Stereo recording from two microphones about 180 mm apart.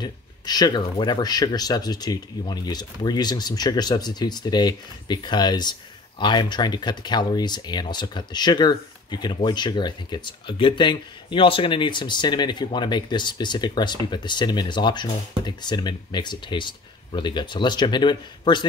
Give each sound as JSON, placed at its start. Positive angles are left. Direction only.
{"t": 0.0, "sound": "speech", "side_deg": 20}